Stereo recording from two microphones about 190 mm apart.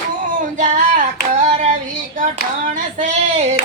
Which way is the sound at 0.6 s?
40° right (ahead or behind).